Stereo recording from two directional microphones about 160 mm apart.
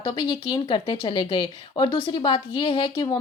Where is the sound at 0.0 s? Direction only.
30° left (ahead or behind).